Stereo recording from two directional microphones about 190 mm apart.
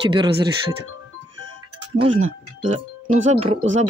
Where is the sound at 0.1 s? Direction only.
25° right (ahead or behind).